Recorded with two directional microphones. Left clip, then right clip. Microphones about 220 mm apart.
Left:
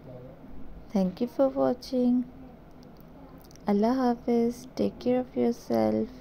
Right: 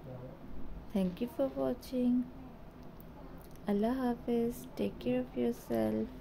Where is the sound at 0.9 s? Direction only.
20° left (ahead or behind).